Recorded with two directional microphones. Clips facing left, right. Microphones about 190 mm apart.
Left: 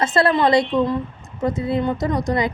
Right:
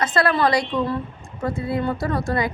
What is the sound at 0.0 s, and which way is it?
A woman's voice, 25° left (ahead or behind).